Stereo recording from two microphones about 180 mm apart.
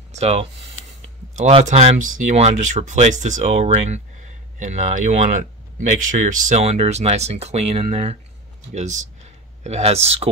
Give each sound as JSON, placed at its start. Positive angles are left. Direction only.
{"t": 0.1, "sound": "speech", "side_deg": -40}